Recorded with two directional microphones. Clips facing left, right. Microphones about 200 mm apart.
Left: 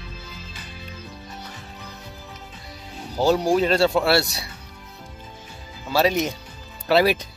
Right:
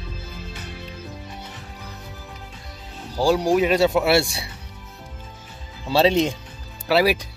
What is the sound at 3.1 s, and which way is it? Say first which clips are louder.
Speech: even; 10° right (ahead or behind).